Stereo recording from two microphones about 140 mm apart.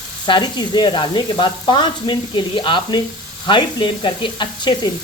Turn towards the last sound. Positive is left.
turn(degrees=35)  # may be behind; listen again after turning